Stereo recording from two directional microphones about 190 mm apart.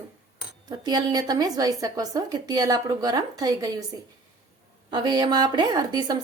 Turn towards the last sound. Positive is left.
turn(degrees=-20)  # may be behind; listen again after turning